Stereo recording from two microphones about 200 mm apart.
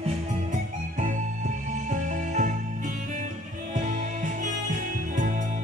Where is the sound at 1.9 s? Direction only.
40° right (ahead or behind).